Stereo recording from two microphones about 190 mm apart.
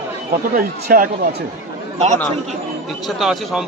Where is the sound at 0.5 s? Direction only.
50° right (ahead or behind).